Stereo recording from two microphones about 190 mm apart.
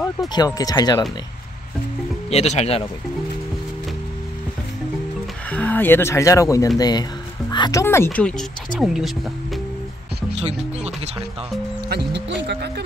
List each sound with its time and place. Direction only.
0.3 s speech: 20° left (ahead or behind)
2.2 s speech: 35° left (ahead or behind)
5.5 s speech: 10° left (ahead or behind)
10.3 s speech: 35° right (ahead or behind)
11.9 s speech: 65° right (ahead or behind)